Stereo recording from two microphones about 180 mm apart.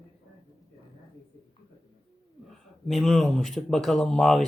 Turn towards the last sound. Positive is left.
turn(degrees=0)  # may be behind; listen again after turning